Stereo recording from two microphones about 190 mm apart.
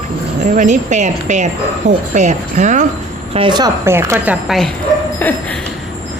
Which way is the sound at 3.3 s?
25° right (ahead or behind).